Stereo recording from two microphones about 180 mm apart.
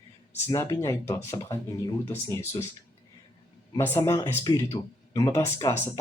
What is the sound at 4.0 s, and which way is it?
Speech, 20° left (ahead or behind).